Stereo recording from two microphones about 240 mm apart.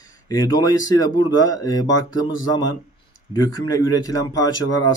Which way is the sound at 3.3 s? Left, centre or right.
Centre.